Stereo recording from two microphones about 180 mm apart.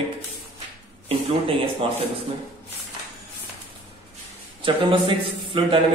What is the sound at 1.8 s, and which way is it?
Speech, 30° right (ahead or behind).